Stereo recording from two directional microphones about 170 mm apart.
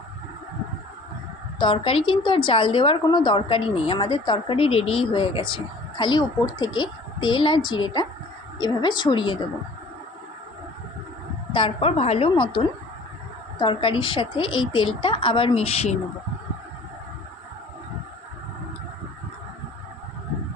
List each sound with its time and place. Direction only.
1.5 s a woman's voice: 30° left (ahead or behind)
11.5 s a woman's voice: 35° left (ahead or behind)
13.6 s a woman's voice: 30° left (ahead or behind)